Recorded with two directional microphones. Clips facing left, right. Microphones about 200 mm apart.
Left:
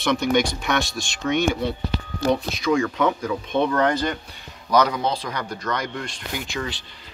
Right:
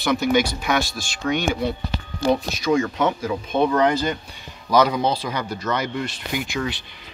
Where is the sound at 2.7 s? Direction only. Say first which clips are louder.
Right 1 dB; 20° right (ahead or behind).